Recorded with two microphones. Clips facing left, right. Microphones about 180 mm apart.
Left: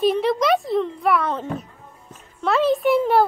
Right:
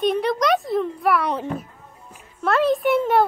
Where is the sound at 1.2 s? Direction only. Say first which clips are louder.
Right 1 dB; 15° right (ahead or behind).